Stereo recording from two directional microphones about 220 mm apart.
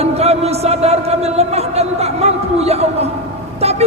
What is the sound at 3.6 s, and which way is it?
Vehicle, 30° right (ahead or behind).